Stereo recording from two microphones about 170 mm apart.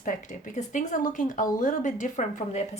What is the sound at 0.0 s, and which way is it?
Speech, 50° left (ahead or behind).